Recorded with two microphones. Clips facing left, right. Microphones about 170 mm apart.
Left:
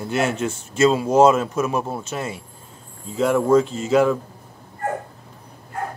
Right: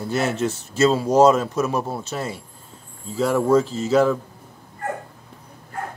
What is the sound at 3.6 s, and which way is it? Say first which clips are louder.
Speech: left 1 dB; 30° right (ahead or behind).